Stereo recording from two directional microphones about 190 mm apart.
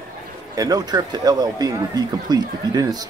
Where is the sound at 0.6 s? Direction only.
20° right (ahead or behind).